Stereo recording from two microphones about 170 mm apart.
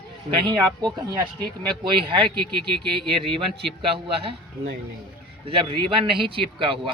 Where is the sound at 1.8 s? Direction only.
30° right (ahead or behind).